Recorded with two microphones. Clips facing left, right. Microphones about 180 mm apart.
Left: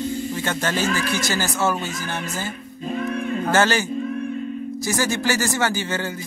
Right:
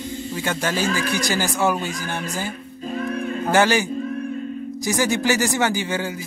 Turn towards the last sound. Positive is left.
turn(degrees=-15)  # may be behind; listen again after turning